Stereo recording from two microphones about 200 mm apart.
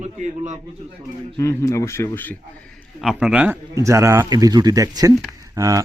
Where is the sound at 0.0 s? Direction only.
35° right (ahead or behind).